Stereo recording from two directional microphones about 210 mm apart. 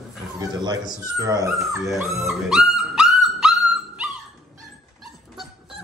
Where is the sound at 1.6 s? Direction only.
Centre (ahead or behind).